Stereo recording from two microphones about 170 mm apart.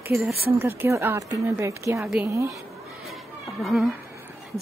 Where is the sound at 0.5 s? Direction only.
15° right (ahead or behind).